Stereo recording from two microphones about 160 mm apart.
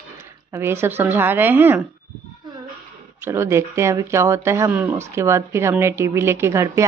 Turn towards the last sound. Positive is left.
turn(degrees=-20)  # may be behind; listen again after turning